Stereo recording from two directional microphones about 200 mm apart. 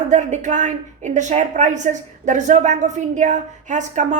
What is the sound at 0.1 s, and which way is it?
A woman's voice, 35° right (ahead or behind).